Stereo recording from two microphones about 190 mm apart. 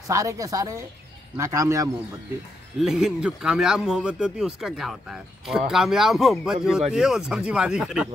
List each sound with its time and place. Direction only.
0.1 s a woman's voice: 15° right (ahead or behind)
2.8 s speech: centre (ahead or behind)